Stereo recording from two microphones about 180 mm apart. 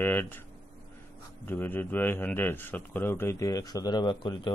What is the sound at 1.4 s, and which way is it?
Speech, 10° left (ahead or behind).